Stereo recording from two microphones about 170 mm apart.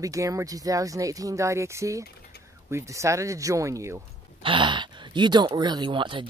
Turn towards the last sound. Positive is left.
turn(degrees=-30)  # may be behind; listen again after turning